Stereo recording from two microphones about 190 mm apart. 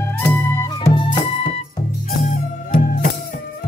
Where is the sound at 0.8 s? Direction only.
25° left (ahead or behind).